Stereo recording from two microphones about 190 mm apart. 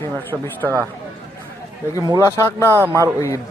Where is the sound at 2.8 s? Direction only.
15° right (ahead or behind).